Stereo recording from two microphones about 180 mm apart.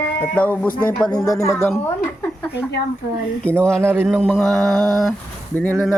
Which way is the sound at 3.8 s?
10° right (ahead or behind).